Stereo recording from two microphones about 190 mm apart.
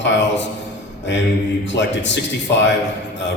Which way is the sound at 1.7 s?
70° left (ahead or behind).